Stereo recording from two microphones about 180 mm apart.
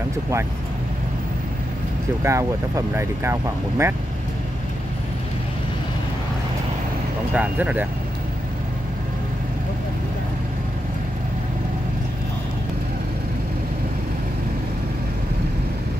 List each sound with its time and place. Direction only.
2.2 s speech: 15° right (ahead or behind)
7.3 s speech: 10° right (ahead or behind)